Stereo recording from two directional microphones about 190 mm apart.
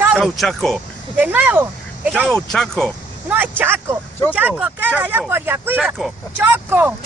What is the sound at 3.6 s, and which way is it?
Speech, 10° right (ahead or behind).